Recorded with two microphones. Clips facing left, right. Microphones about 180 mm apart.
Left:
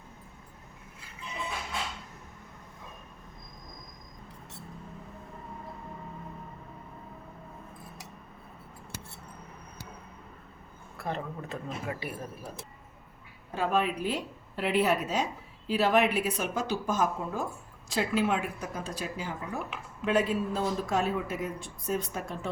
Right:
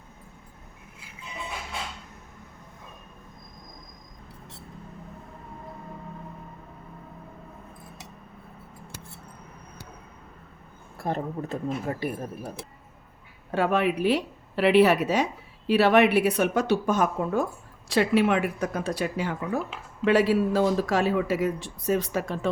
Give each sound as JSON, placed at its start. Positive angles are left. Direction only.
{"t": 10.9, "sound": "speech", "side_deg": -45}
{"t": 13.5, "sound": "a woman's voice", "side_deg": -70}